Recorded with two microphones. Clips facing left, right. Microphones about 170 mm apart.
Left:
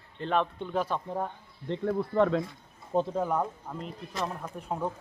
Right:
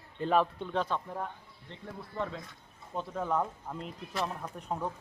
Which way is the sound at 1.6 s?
70° left (ahead or behind).